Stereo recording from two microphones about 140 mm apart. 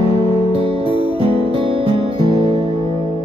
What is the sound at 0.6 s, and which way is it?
Music, 40° right (ahead or behind).